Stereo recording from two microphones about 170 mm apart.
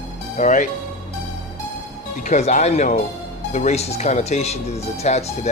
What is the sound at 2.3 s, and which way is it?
Speech, 45° left (ahead or behind).